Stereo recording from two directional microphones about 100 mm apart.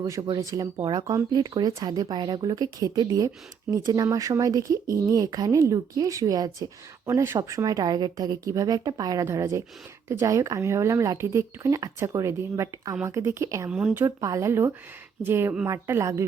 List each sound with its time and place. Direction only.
0.2 s speech: 50° right (ahead or behind)
0.4 s speech: 35° right (ahead or behind)
13.7 s speech: 10° right (ahead or behind)
14.0 s speech: 30° right (ahead or behind)